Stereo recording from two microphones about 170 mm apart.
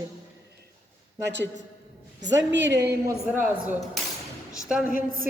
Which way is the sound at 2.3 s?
90° right.